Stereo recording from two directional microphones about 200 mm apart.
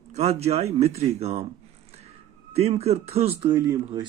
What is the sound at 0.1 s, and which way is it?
Speech, 35° right (ahead or behind).